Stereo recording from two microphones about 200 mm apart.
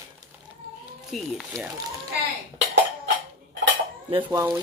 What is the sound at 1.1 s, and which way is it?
Speech, centre (ahead or behind).